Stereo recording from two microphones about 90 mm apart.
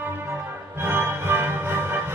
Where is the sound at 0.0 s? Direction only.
25° right (ahead or behind).